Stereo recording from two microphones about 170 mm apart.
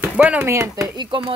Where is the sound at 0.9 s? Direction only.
25° right (ahead or behind).